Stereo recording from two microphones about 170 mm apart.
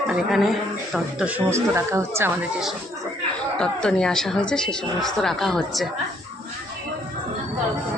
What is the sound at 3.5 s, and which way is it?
A woman's voice, 5° left (ahead or behind).